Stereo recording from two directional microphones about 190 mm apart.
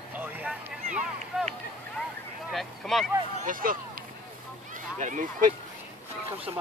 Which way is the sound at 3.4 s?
45° right (ahead or behind).